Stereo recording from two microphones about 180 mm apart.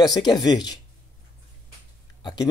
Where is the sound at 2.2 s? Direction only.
20° left (ahead or behind).